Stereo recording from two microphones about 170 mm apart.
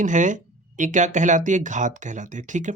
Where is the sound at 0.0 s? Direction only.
50° right (ahead or behind).